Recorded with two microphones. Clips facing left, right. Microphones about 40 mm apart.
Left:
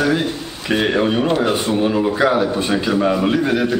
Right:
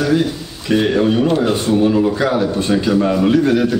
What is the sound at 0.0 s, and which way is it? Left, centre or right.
A man's voice, centre.